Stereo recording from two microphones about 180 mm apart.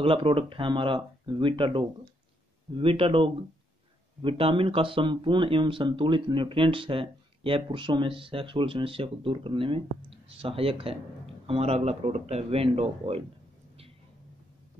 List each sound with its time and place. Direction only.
0.0 s speech: 30° right (ahead or behind)